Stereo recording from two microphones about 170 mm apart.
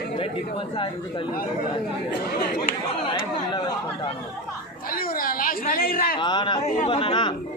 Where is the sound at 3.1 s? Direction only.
25° left (ahead or behind).